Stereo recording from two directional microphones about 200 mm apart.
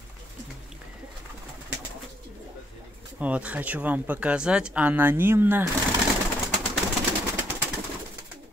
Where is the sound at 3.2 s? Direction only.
5° right (ahead or behind).